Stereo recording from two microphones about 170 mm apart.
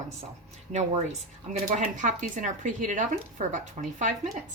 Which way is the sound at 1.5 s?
45° right (ahead or behind).